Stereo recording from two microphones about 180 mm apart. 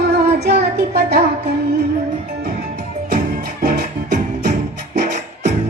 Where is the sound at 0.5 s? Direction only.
65° right (ahead or behind).